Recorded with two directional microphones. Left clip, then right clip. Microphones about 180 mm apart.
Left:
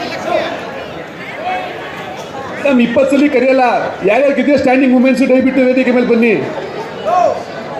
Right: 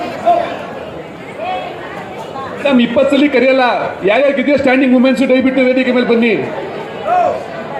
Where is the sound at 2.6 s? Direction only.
40° left (ahead or behind).